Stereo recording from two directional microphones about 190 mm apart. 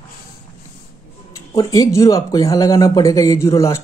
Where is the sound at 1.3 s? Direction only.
20° left (ahead or behind).